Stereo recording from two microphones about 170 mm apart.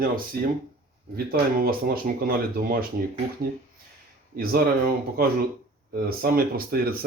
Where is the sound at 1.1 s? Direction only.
60° right (ahead or behind).